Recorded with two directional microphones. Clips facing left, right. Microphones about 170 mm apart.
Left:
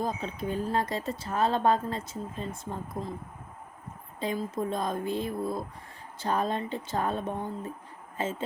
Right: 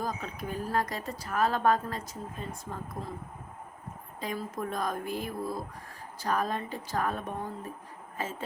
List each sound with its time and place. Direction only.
0.0 s speech: 25° left (ahead or behind)
4.2 s speech: 25° left (ahead or behind)